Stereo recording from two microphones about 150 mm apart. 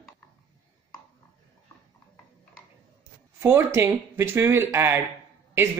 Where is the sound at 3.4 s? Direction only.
15° right (ahead or behind).